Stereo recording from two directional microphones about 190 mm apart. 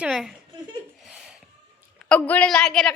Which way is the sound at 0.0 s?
5° right (ahead or behind).